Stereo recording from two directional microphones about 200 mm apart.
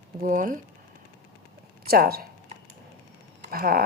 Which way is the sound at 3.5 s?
45° right (ahead or behind).